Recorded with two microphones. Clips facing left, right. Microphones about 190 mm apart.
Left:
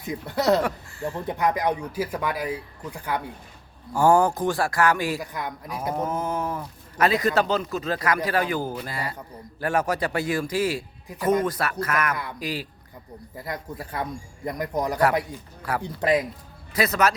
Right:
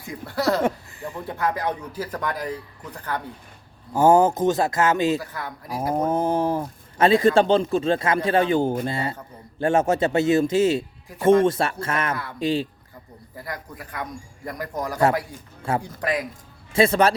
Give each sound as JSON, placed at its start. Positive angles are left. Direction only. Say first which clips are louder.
{"t": 0.0, "sound": "a man's voice", "louder": "even", "side_deg": 20}
{"t": 0.6, "sound": "speech", "louder": "right 3 dB", "side_deg": -15}
{"t": 1.3, "sound": "a man's voice", "louder": "left 1 dB", "side_deg": 15}
{"t": 3.9, "sound": "a man's voice", "louder": "right 3 dB", "side_deg": -20}
{"t": 5.2, "sound": "a man's voice", "louder": "left 1 dB", "side_deg": 15}
{"t": 5.9, "sound": "mantra", "louder": "right 5 dB", "side_deg": -30}
{"t": 7.0, "sound": "a man's voice", "louder": "right 5 dB", "side_deg": -25}
{"t": 13.3, "sound": "a man's voice", "louder": "left 2 dB", "side_deg": 25}
{"t": 15.6, "sound": "a man's voice", "louder": "right 4 dB", "side_deg": -25}
{"t": 16.0, "sound": "a man's voice", "louder": "left 4 dB", "side_deg": 25}
{"t": 16.7, "sound": "a man's voice", "louder": "right 4 dB", "side_deg": -25}